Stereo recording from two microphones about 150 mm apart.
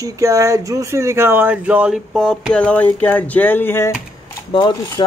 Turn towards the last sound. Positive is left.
turn(degrees=30)  # may be behind; listen again after turning